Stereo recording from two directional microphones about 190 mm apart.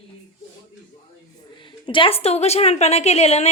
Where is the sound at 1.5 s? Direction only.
25° left (ahead or behind).